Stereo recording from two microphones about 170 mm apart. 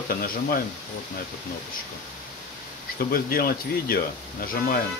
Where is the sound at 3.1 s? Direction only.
60° left (ahead or behind).